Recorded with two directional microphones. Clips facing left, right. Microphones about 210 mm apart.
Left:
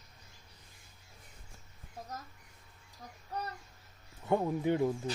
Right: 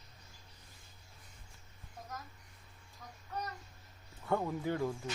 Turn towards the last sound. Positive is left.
turn(degrees=20)  # may be behind; listen again after turning